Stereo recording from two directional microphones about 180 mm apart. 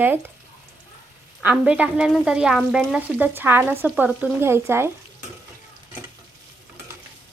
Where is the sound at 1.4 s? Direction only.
5° right (ahead or behind).